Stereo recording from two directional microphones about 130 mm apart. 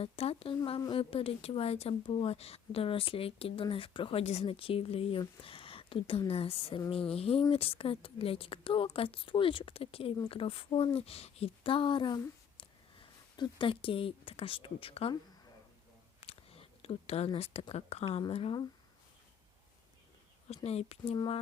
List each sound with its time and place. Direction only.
0.0 s speech: 50° left (ahead or behind)
0.5 s speech: 35° left (ahead or behind)
16.2 s a sound: 50° left (ahead or behind)
17.7 s speech: 50° left (ahead or behind)
20.7 s speech: 50° left (ahead or behind)